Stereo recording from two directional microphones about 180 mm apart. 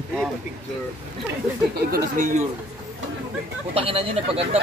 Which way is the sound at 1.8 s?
60° right (ahead or behind).